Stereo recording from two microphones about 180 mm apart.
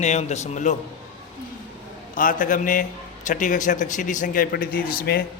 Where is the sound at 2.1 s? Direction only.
50° left (ahead or behind).